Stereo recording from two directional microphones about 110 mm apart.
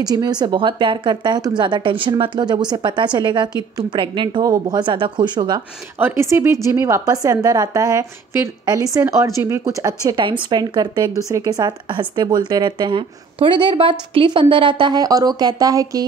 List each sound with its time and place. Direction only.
0.0 s a woman's voice: 35° right (ahead or behind)
5.9 s a woman's voice: 20° right (ahead or behind)
10.2 s speech: 45° right (ahead or behind)
13.4 s a woman's voice: 50° right (ahead or behind); by 16.0 s 35° right (ahead or behind)